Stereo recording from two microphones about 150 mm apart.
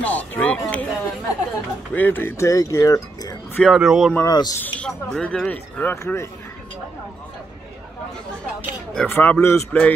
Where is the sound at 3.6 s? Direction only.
Centre (ahead or behind).